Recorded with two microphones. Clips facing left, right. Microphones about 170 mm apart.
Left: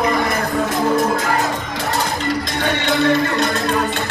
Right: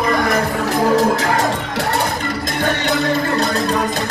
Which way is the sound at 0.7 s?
85° right.